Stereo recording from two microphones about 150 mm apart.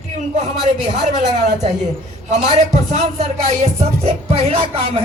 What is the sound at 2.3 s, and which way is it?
Speech, 50° right (ahead or behind).